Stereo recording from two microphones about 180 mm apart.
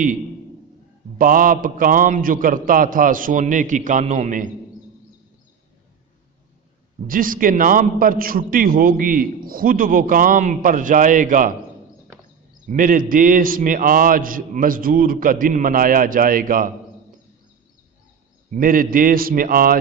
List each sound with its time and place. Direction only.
1.2 s a man's voice: 50° right (ahead or behind)
7.1 s a man's voice: 50° right (ahead or behind)
12.6 s a man's voice: 50° right (ahead or behind)
18.5 s a man's voice: 50° right (ahead or behind)